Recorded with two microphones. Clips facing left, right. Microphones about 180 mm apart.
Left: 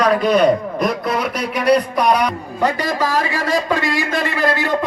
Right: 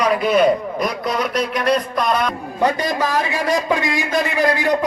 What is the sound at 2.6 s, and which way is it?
A man's voice, 20° right (ahead or behind).